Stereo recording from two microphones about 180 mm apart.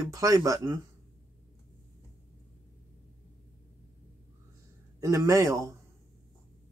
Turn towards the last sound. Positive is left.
turn(degrees=-15)  # may be behind; listen again after turning